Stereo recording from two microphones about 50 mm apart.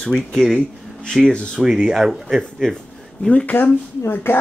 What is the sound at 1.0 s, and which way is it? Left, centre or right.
Speech, centre.